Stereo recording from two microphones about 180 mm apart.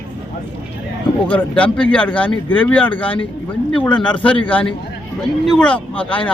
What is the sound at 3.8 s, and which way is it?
Speech, 25° left (ahead or behind).